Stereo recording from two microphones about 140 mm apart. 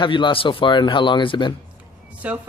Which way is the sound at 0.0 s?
35° left (ahead or behind).